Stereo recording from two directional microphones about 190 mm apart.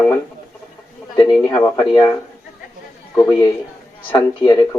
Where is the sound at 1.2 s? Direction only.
20° left (ahead or behind).